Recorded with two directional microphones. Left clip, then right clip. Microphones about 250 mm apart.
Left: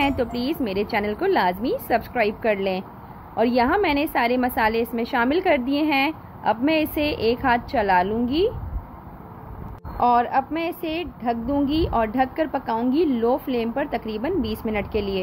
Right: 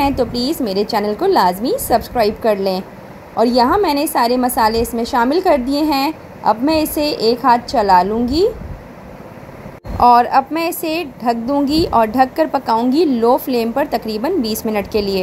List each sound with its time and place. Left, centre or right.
0.3 s a woman's voice: right
0.9 s a woman's voice: centre
9.9 s a woman's voice: right